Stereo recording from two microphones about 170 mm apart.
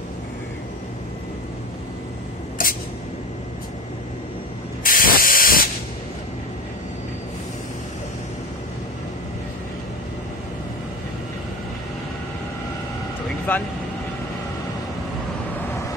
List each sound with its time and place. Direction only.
2.6 s a sound: 55° left (ahead or behind)
4.8 s spray: 55° left (ahead or behind)
13.5 s speech: 10° left (ahead or behind)